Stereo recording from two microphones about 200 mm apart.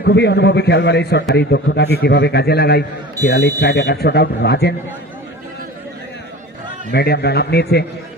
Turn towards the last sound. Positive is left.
turn(degrees=55)  # may be behind; listen again after turning